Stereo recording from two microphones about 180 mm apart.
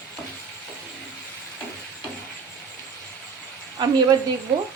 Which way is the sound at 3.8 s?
25° right (ahead or behind).